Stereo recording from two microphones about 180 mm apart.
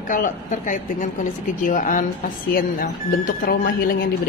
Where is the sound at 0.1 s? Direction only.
45° left (ahead or behind).